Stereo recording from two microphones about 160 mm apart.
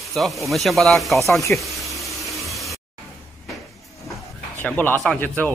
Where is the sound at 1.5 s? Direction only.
Centre (ahead or behind).